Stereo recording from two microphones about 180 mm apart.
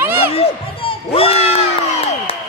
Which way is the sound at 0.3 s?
30° left (ahead or behind).